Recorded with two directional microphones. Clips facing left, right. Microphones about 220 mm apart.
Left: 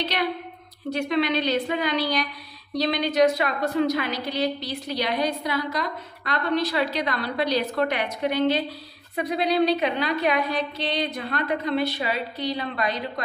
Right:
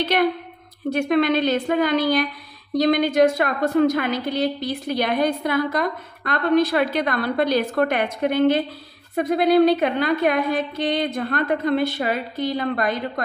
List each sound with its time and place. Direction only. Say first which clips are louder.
0.0 s a woman's voice: right 6 dB; 50° right (ahead or behind)